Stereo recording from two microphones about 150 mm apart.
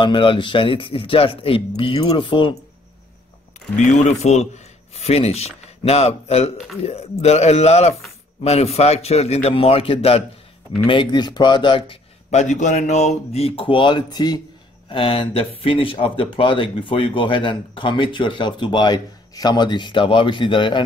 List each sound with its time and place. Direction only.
0.0 s speech: 35° left (ahead or behind)
3.7 s a man's voice: 55° left (ahead or behind); by 20.8 s 35° left (ahead or behind)